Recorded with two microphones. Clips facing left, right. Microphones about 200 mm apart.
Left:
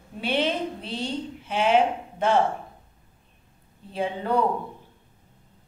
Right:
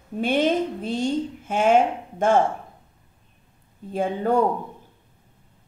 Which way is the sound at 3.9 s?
45° right (ahead or behind).